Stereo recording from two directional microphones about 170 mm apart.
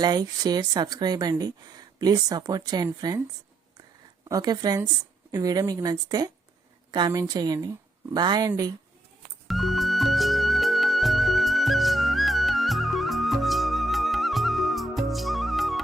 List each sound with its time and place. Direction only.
0.0 s a woman's voice: 25° right (ahead or behind)
4.3 s a woman's voice: 25° right (ahead or behind)
9.5 s music: centre (ahead or behind)